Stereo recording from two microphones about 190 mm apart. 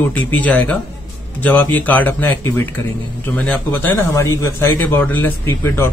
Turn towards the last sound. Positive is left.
turn(degrees=15)  # may be behind; listen again after turning